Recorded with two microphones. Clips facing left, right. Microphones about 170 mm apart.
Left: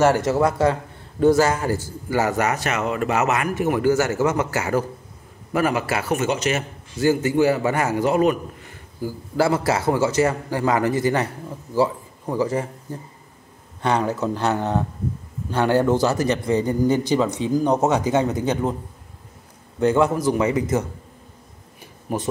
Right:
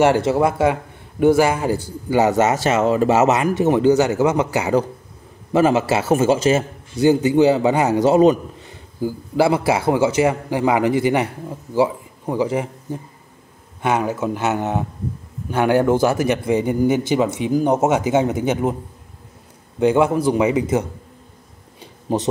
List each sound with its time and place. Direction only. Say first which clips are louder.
0.0 s a man's voice: right 2 dB; 20° right (ahead or behind)
19.8 s speech: right 2 dB; 15° right (ahead or behind)
22.1 s a man's voice: right 5 dB; 25° right (ahead or behind)